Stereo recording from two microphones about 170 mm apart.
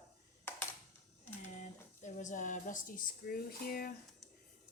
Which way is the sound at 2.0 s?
45° left (ahead or behind).